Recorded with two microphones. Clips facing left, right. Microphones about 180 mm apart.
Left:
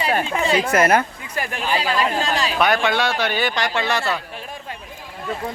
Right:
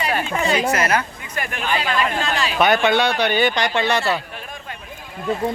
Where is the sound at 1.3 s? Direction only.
35° left (ahead or behind).